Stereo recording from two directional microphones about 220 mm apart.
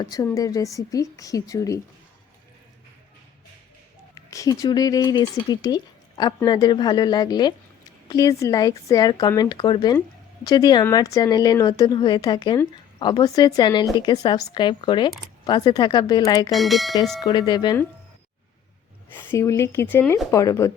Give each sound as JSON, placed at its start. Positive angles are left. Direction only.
{"t": 0.0, "sound": "speech", "side_deg": 15}
{"t": 4.1, "sound": "a woman's voice", "side_deg": 15}
{"t": 16.5, "sound": "speech", "side_deg": 0}
{"t": 17.2, "sound": "a woman's voice", "side_deg": 20}
{"t": 19.1, "sound": "speech", "side_deg": 10}